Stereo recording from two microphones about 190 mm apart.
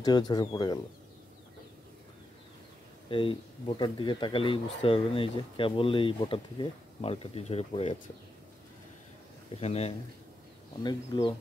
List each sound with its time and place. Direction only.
0.0 s speech: 20° left (ahead or behind)
3.1 s speech: 30° left (ahead or behind)
9.6 s a man's voice: 35° left (ahead or behind)
10.8 s speech: 20° left (ahead or behind)